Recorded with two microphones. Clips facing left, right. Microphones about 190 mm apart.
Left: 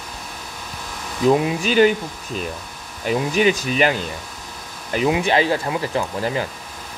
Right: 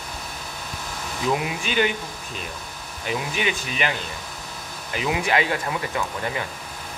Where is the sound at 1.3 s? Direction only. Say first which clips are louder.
Left 8 dB; 40° left (ahead or behind).